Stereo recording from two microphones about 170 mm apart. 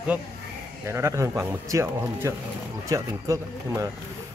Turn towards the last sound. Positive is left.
turn(degrees=-20)  # may be behind; listen again after turning